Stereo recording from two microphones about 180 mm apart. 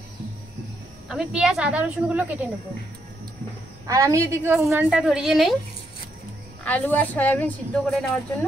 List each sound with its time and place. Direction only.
1.0 s speech: centre (ahead or behind)
3.8 s a woman's voice: 20° right (ahead or behind); by 5.6 s centre (ahead or behind)
6.6 s a woman's voice: 10° left (ahead or behind)